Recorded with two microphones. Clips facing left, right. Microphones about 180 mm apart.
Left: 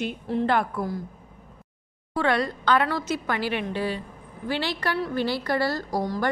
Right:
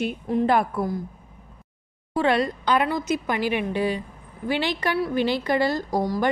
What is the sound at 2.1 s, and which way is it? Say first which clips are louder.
A woman's voice: right 3 dB; 20° right (ahead or behind).